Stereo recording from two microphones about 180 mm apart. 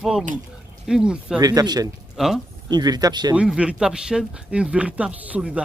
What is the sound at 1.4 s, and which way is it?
Speech, 20° right (ahead or behind).